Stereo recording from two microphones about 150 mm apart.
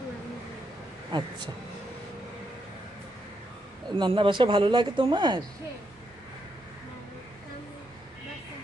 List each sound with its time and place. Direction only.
1.1 s speech: 30° right (ahead or behind)
3.9 s speech: 35° right (ahead or behind)